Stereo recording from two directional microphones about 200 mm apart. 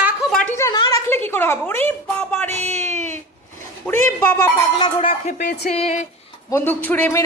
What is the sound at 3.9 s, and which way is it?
Speech, 10° left (ahead or behind).